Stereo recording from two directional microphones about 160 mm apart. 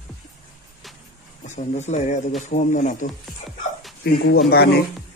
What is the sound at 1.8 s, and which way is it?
Speech, 45° left (ahead or behind).